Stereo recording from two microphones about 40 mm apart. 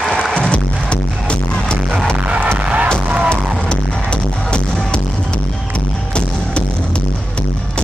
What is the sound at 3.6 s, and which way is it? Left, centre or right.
Music, left.